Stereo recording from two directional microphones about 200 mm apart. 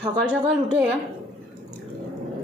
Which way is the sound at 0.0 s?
5° right (ahead or behind).